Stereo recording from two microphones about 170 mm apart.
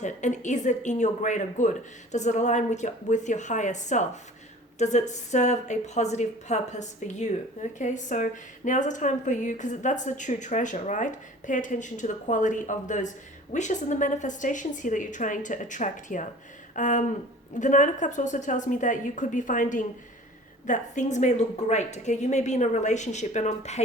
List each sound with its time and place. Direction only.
0.0 s a woman's voice: 45° left (ahead or behind)